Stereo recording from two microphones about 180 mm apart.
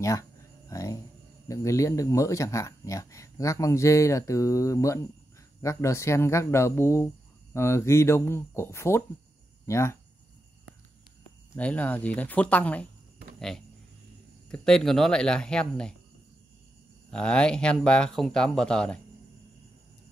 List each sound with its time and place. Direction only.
0.0 s a sound: 20° left (ahead or behind)
1.5 s speech: 15° left (ahead or behind)
11.5 s speech: 10° left (ahead or behind)
14.5 s speech: 5° left (ahead or behind)
17.1 s speech: 5° left (ahead or behind)